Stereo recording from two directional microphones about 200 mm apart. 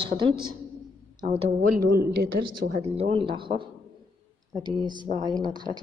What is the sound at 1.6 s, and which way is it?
A woman's voice, 40° right (ahead or behind).